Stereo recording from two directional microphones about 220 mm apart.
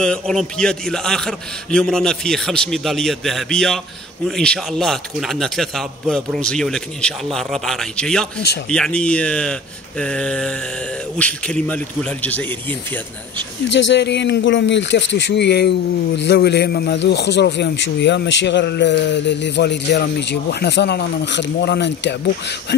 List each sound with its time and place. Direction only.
0.0 s a man's voice: 5° left (ahead or behind)
13.7 s a man's voice: 55° left (ahead or behind)